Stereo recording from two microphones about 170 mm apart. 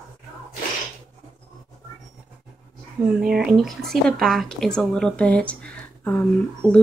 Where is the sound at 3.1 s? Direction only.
5° right (ahead or behind).